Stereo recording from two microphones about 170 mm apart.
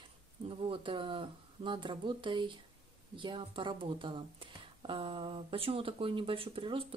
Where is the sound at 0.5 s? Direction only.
30° right (ahead or behind).